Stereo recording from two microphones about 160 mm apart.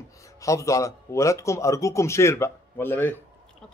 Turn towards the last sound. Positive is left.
turn(degrees=15)  # may be behind; listen again after turning